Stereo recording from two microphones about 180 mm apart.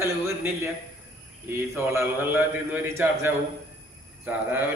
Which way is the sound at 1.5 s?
15° right (ahead or behind).